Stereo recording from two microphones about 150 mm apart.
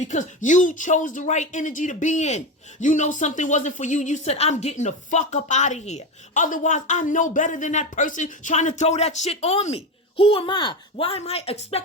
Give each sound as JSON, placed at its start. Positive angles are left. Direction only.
{"t": 0.0, "sound": "speech", "side_deg": 55}